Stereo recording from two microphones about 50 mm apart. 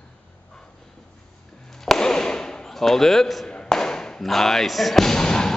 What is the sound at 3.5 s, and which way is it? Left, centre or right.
Music, centre.